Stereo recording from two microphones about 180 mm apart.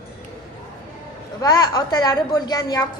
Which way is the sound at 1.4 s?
25° left (ahead or behind).